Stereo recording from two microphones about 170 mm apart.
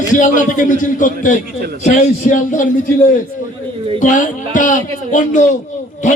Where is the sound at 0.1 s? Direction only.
50° left (ahead or behind).